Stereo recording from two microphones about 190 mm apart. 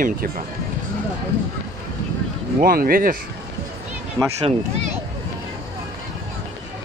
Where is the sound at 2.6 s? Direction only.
50° right (ahead or behind).